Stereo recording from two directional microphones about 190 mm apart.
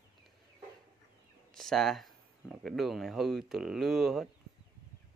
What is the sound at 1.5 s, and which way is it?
Speech, centre (ahead or behind).